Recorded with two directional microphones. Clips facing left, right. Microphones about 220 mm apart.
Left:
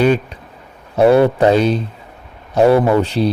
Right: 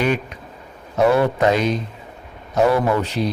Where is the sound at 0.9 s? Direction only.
30° left (ahead or behind).